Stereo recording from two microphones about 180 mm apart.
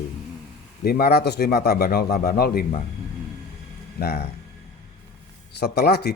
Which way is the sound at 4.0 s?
60° left (ahead or behind).